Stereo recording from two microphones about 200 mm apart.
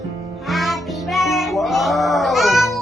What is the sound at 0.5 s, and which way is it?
Music, centre (ahead or behind).